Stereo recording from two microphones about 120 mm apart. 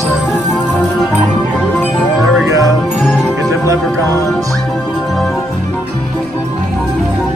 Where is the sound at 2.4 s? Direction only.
30° right (ahead or behind).